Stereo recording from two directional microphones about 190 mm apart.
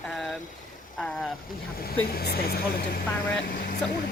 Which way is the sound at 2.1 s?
55° left (ahead or behind).